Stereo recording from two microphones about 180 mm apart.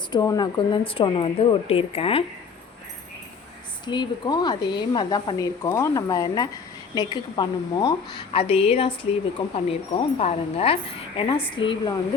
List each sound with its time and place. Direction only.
0.1 s speech: 20° left (ahead or behind)
3.8 s a woman's voice: 25° left (ahead or behind)